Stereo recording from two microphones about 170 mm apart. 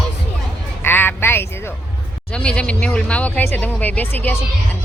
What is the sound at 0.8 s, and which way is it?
Speech, 10° left (ahead or behind).